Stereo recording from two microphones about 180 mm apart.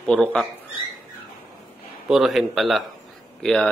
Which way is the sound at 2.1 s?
Centre (ahead or behind).